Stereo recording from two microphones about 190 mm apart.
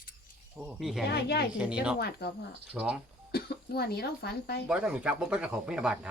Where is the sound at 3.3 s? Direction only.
55° left (ahead or behind).